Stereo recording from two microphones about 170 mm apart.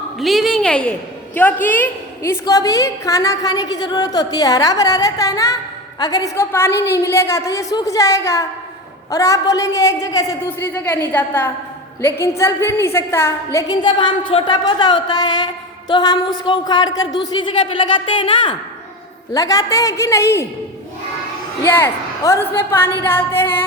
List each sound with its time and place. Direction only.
0.2 s a woman's voice: centre (ahead or behind); by 20.5 s 15° left (ahead or behind)
21.6 s a woman's voice: 15° left (ahead or behind)